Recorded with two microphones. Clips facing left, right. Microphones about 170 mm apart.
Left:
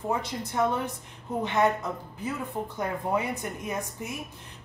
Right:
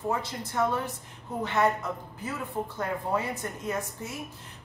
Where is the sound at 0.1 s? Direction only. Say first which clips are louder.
Left 4 dB; 15° left (ahead or behind).